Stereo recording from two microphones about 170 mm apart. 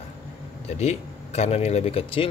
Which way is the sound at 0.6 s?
40° left (ahead or behind).